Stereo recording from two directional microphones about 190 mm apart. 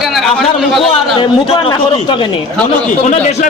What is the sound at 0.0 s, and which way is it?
Speech, centre (ahead or behind).